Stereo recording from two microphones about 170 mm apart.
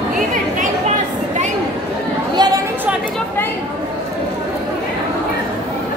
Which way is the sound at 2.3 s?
25° right (ahead or behind).